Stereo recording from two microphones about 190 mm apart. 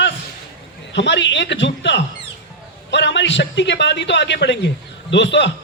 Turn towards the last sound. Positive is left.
turn(degrees=70)  # may be behind; listen again after turning